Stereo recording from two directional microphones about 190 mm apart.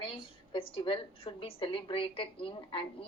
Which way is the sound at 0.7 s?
25° left (ahead or behind).